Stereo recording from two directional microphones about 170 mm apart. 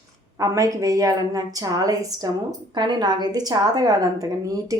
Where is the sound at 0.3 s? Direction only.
20° right (ahead or behind).